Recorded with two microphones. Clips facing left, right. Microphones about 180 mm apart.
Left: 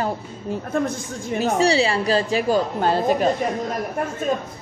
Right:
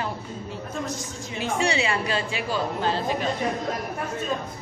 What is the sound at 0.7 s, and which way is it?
Speech, 55° left (ahead or behind).